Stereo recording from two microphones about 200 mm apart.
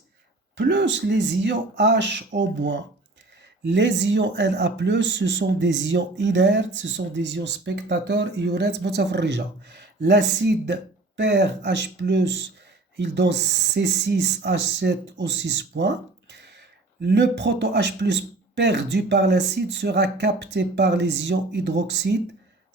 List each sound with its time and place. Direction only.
0.5 s speech: 60° right (ahead or behind)